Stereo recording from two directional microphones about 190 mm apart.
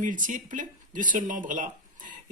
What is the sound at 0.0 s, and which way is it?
Speech, 45° right (ahead or behind).